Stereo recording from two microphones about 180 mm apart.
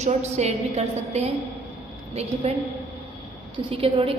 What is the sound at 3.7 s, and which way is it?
Speech, 30° right (ahead or behind).